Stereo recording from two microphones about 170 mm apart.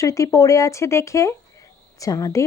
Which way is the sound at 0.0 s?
20° left (ahead or behind).